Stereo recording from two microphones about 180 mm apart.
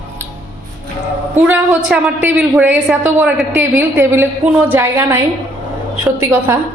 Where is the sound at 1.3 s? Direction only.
10° right (ahead or behind).